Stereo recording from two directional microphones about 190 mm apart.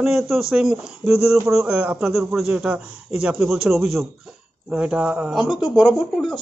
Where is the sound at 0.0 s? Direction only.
Centre (ahead or behind).